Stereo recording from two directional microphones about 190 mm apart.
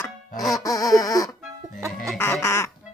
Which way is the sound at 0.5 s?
20° left (ahead or behind).